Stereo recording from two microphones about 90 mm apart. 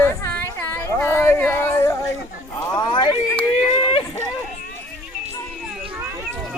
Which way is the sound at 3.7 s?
75° left (ahead or behind).